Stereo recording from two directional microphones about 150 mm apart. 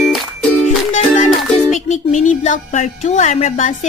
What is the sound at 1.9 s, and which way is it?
A woman's voice, 50° left (ahead or behind).